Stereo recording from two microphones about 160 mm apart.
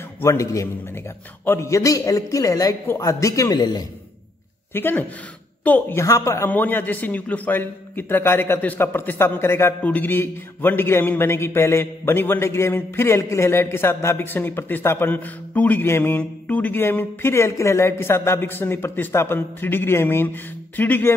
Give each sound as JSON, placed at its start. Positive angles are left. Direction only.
{"t": 0.2, "sound": "a man's voice", "side_deg": 20}
{"t": 4.7, "sound": "a man's voice", "side_deg": 15}